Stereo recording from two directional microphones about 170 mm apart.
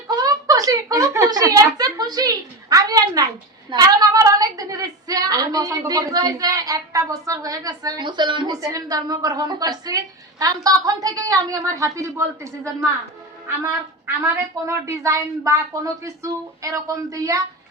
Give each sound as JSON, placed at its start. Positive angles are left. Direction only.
{"t": 0.2, "sound": "a woman's voice", "side_deg": -20}
{"t": 14.3, "sound": "a woman's voice", "side_deg": -15}